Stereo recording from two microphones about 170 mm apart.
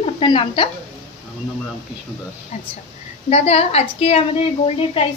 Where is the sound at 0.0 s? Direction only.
30° left (ahead or behind).